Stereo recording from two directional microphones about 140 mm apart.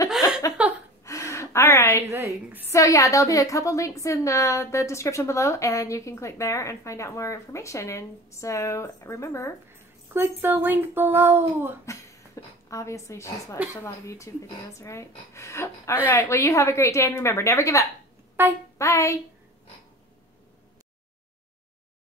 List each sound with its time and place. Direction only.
0.1 s a sound: 5° right (ahead or behind)
1.0 s gasp: 20° left (ahead or behind)
2.0 s a woman's voice: 20° right (ahead or behind)
2.7 s a woman's voice: 20° left (ahead or behind)
10.1 s a woman's voice: 15° right (ahead or behind)
11.8 s a sound: 20° left (ahead or behind)
12.6 s a woman's voice: 20° left (ahead or behind)
18.4 s speech: 15° right (ahead or behind)
18.8 s a woman's voice: 20° left (ahead or behind)